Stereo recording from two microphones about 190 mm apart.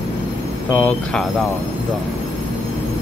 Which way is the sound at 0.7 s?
5° left (ahead or behind).